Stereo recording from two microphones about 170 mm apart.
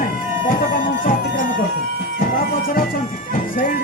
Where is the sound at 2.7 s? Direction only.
55° left (ahead or behind).